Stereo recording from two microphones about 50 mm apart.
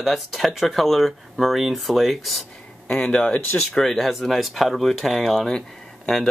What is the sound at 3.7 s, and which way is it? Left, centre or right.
Speech, centre.